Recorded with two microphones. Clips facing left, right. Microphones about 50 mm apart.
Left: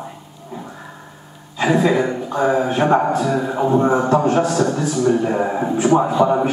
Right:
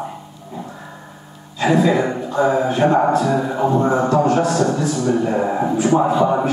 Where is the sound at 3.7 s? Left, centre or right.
Centre.